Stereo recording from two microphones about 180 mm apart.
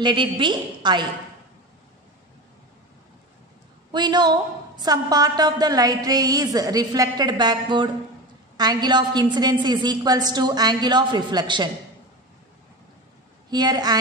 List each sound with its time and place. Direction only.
0.0 s a woman's voice: 25° right (ahead or behind)
3.9 s a woman's voice: 25° right (ahead or behind)
13.5 s a woman's voice: 25° right (ahead or behind)